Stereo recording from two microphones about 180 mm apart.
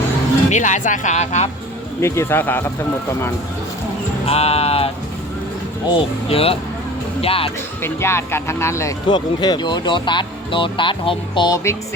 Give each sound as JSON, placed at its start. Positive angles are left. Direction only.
{"t": 0.5, "sound": "speech", "side_deg": 45}
{"t": 2.0, "sound": "speech", "side_deg": 15}
{"t": 4.3, "sound": "speech", "side_deg": 35}
{"t": 5.9, "sound": "speech", "side_deg": 30}
{"t": 7.8, "sound": "speech", "side_deg": 15}